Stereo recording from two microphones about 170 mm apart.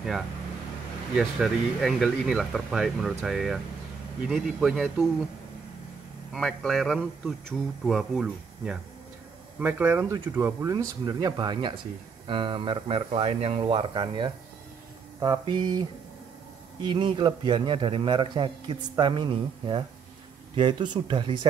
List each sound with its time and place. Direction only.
1.1 s speech: centre (ahead or behind)
6.3 s speech: centre (ahead or behind)
9.6 s a man's voice: 10° right (ahead or behind)
16.9 s a man's voice: 25° right (ahead or behind)